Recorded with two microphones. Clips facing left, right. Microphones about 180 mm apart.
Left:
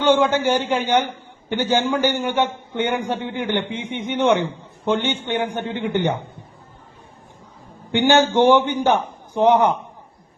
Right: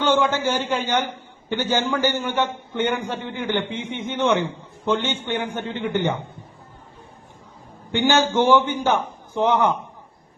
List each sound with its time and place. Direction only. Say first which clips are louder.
0.0 s a man's voice: left 3 dB; 15° left (ahead or behind)
7.9 s a man's voice: left 3 dB; 15° left (ahead or behind)